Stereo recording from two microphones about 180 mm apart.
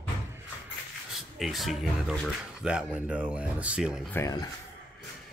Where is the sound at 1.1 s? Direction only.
Centre (ahead or behind).